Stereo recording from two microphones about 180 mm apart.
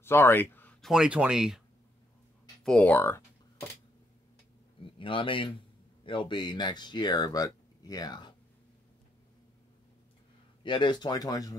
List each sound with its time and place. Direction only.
0.0 s speech: 15° left (ahead or behind); by 1.6 s 5° right (ahead or behind)
2.6 s speech: 5° left (ahead or behind)
4.8 s speech: 30° left (ahead or behind)
10.6 s speech: 25° left (ahead or behind)